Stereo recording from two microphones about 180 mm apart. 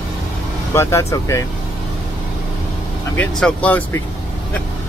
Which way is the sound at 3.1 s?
10° left (ahead or behind).